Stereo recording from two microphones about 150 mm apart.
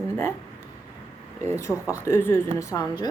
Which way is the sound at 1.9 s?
15° left (ahead or behind).